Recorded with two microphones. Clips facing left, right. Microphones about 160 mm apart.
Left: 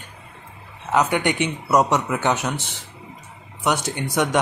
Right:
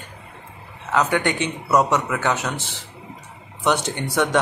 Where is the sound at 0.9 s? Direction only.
15° left (ahead or behind).